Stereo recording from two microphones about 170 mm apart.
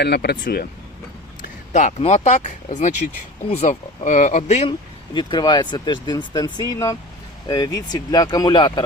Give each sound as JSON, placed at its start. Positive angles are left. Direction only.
{"t": 0.0, "sound": "speech", "side_deg": 75}
{"t": 1.4, "sound": "speech", "side_deg": 45}
{"t": 5.1, "sound": "speech", "side_deg": 25}